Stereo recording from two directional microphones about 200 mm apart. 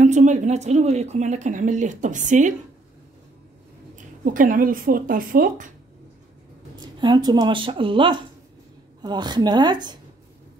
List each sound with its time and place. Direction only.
0.0 s speech: 35° right (ahead or behind)
3.9 s speech: 40° right (ahead or behind)
6.8 s speech: 20° right (ahead or behind)